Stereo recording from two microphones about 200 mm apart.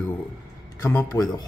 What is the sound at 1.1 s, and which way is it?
Speech, 15° left (ahead or behind).